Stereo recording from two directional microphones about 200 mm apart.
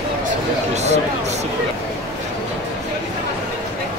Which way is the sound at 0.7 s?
35° right (ahead or behind).